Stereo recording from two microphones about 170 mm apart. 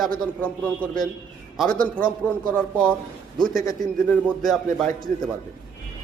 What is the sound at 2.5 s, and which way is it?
A man's voice, 5° left (ahead or behind).